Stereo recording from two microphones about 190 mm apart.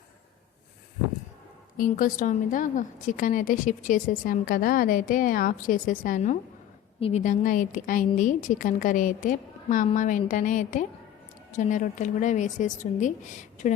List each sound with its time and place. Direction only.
1.7 s a woman's voice: 45° left (ahead or behind)